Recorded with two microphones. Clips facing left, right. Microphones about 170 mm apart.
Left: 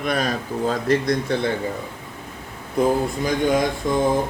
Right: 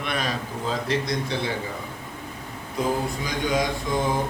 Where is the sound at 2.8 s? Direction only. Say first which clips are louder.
Left 6 dB; 55° left (ahead or behind).